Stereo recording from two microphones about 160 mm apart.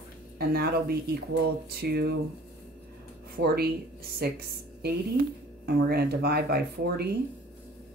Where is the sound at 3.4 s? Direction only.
85° right.